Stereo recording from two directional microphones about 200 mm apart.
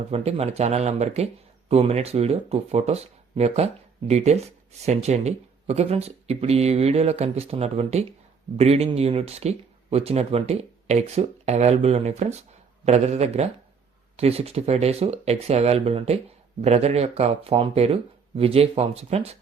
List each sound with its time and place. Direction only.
0.1 s speech: 30° right (ahead or behind)